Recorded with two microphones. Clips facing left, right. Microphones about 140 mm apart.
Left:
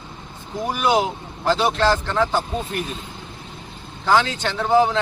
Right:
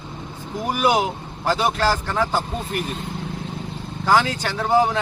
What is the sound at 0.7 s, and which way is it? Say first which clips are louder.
Speech: even; 10° right (ahead or behind).